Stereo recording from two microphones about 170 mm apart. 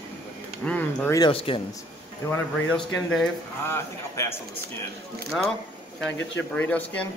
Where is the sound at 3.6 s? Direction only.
15° left (ahead or behind).